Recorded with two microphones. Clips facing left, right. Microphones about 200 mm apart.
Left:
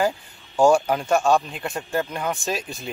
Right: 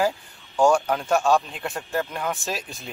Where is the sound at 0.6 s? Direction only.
5° left (ahead or behind).